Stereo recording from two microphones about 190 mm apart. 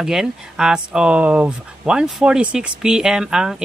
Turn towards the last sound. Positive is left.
turn(degrees=-5)  # may be behind; listen again after turning